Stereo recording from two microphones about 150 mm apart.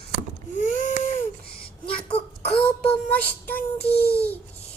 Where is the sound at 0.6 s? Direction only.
55° left (ahead or behind).